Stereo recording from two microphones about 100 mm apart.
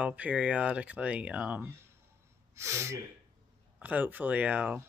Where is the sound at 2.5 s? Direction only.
30° right (ahead or behind).